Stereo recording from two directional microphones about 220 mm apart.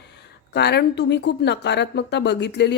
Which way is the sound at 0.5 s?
50° left (ahead or behind).